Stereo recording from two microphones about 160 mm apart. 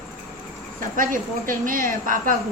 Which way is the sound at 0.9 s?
60° right (ahead or behind).